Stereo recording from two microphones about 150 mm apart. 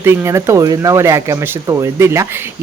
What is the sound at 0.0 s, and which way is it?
Speech, 15° right (ahead or behind).